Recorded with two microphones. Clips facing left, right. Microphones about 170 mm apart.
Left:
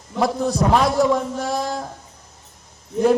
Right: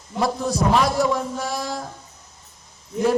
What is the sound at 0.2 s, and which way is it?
A man's voice, 55° left (ahead or behind).